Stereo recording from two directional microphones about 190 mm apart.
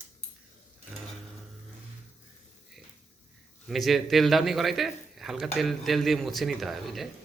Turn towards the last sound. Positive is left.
turn(degrees=0)  # may be behind; listen again after turning